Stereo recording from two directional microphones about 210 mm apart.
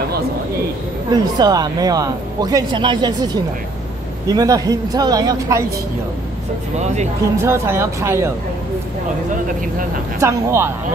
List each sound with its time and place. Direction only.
1.1 s speech: 20° right (ahead or behind)
4.3 s speech: 15° right (ahead or behind)
7.4 s speech: 10° right (ahead or behind)
10.2 s speech: 10° right (ahead or behind)